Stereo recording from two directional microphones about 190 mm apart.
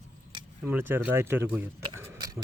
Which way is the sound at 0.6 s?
10° right (ahead or behind).